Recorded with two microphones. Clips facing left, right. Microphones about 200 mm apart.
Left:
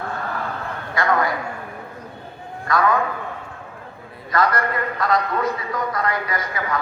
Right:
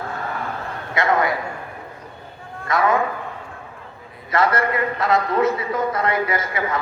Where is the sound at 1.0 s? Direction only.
25° right (ahead or behind).